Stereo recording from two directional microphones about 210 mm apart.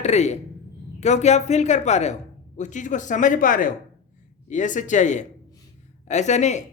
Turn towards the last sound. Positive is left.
turn(degrees=35)  # may be behind; listen again after turning